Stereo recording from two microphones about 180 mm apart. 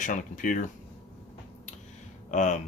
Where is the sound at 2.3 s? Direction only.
40° left (ahead or behind).